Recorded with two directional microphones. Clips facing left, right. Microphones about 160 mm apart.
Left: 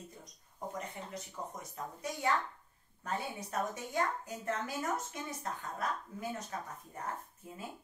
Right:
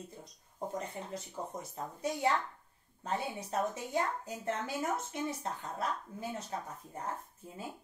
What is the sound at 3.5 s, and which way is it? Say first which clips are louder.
Speech: right 2 dB; 25° right (ahead or behind).